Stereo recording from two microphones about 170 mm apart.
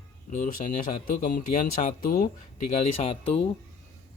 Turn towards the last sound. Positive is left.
turn(degrees=35)  # may be behind; listen again after turning